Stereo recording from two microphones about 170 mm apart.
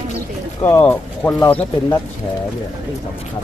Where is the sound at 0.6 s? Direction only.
15° left (ahead or behind).